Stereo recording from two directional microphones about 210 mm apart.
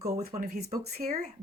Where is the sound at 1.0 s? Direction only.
40° right (ahead or behind).